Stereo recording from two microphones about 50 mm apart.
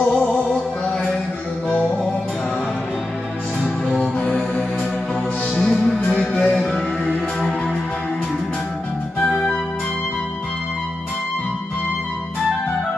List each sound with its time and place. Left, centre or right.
0.0 s music: left
4.0 s music: left
5.6 s music: centre
6.6 s music: centre